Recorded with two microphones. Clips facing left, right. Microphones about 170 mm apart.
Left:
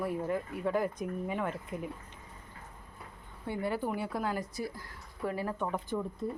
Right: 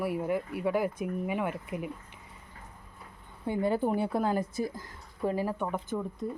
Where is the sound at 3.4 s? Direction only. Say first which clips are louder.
Right 5 dB; 20° right (ahead or behind).